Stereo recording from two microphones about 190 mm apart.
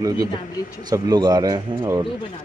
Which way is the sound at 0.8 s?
20° right (ahead or behind).